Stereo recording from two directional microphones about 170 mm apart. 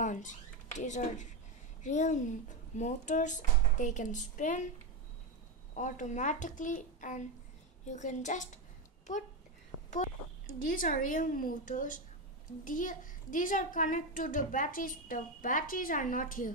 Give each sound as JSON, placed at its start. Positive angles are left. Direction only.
{"t": 0.0, "sound": "a woman's voice", "side_deg": 50}
{"t": 5.8, "sound": "a woman's voice", "side_deg": 50}
{"t": 9.8, "sound": "a sound", "side_deg": 45}
{"t": 10.6, "sound": "a woman's voice", "side_deg": 55}